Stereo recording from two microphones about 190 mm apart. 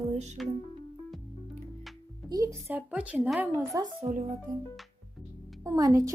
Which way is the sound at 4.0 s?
35° right (ahead or behind).